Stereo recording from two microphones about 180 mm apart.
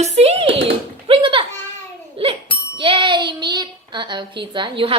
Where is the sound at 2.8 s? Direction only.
25° right (ahead or behind).